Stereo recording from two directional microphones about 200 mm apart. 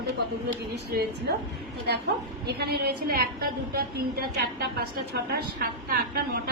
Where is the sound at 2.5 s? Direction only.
50° right (ahead or behind).